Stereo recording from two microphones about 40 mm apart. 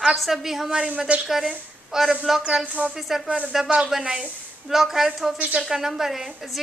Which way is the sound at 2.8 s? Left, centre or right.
Right.